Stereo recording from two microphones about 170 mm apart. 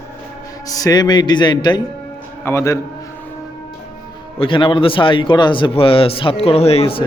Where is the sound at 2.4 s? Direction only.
15° left (ahead or behind).